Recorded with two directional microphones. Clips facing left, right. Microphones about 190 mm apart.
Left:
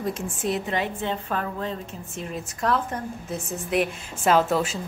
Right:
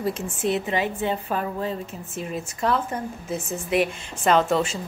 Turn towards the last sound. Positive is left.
turn(degrees=5)  # may be behind; listen again after turning